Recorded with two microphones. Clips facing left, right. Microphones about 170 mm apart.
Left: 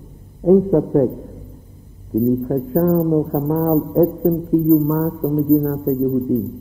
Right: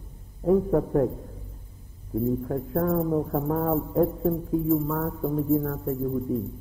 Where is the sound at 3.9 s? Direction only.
Centre (ahead or behind).